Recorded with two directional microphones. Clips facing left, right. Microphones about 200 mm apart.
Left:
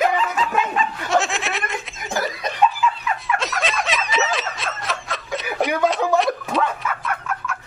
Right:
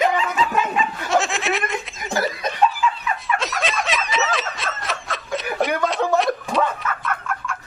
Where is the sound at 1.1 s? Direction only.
Centre (ahead or behind).